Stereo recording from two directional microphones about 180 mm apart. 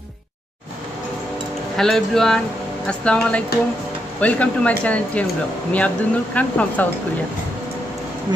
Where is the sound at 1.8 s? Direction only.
5° left (ahead or behind).